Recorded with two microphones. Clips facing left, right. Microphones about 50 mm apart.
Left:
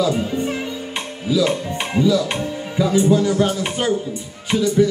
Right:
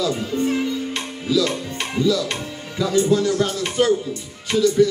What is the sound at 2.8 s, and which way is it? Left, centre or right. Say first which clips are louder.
Speech: left 2 dB; centre.